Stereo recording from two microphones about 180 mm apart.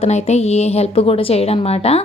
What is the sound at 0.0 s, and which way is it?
A woman's voice, 35° left (ahead or behind).